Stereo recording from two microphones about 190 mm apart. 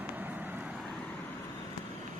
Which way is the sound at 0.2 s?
10° right (ahead or behind).